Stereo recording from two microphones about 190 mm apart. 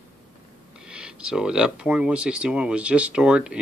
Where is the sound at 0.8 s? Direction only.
5° right (ahead or behind).